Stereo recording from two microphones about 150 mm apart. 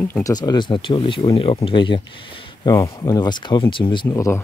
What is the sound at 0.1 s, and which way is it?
Speech, 25° left (ahead or behind).